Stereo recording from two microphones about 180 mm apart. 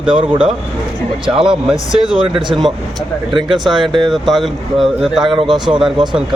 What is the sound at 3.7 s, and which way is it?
Speech, 25° right (ahead or behind).